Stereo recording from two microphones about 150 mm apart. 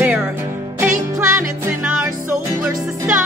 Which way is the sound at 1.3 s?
20° right (ahead or behind).